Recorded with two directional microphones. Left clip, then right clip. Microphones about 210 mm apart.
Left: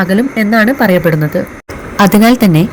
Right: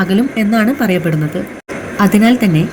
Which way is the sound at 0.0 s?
15° left (ahead or behind).